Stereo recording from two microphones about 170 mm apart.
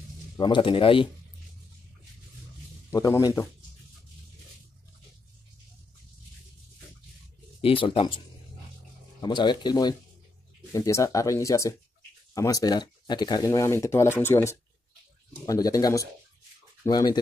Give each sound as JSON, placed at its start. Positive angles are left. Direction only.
{"t": 0.4, "sound": "speech", "side_deg": 30}
{"t": 2.9, "sound": "speech", "side_deg": 20}
{"t": 7.6, "sound": "speech", "side_deg": 30}
{"t": 9.2, "sound": "speech", "side_deg": 25}